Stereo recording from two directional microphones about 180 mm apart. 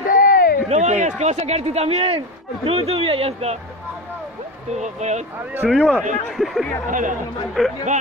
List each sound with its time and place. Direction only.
0.1 s a sound: 50° left (ahead or behind)
0.7 s speech: 40° right (ahead or behind)
4.7 s speech: 40° right (ahead or behind)
5.5 s speech: 10° right (ahead or behind)
5.8 s speech: 5° left (ahead or behind)
6.9 s speech: 45° right (ahead or behind)
7.6 s speech: centre (ahead or behind)